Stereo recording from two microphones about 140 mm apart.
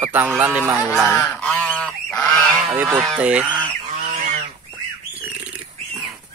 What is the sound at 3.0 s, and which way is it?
Speech, 5° right (ahead or behind).